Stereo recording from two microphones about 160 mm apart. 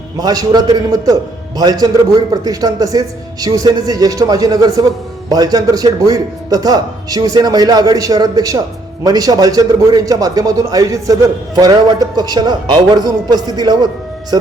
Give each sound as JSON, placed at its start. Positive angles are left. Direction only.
{"t": 0.2, "sound": "a man's voice", "side_deg": -25}